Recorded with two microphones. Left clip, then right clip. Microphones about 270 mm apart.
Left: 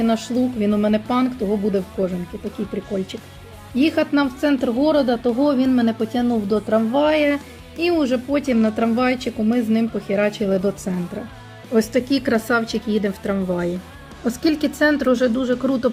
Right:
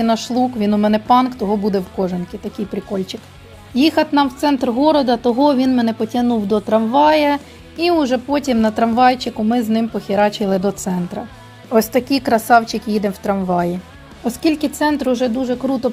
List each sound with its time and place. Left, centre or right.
0.0 s speech: centre
3.8 s speech: centre